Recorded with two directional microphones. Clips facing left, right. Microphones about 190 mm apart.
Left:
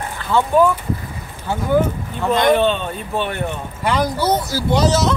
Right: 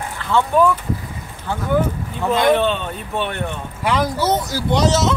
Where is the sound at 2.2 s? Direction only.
5° right (ahead or behind).